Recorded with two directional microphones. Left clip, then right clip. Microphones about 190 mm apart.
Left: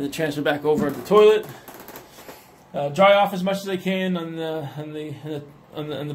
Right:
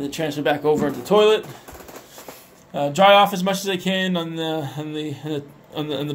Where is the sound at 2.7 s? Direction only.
20° right (ahead or behind).